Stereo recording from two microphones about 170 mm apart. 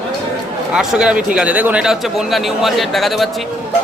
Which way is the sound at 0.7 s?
Centre (ahead or behind).